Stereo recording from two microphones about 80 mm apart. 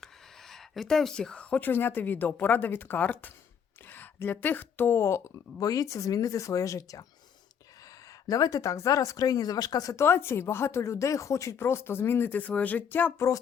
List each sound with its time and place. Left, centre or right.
0.0 s speech: centre; by 7.0 s left
8.3 s speech: left
9.9 s speech: left
13.1 s speech: left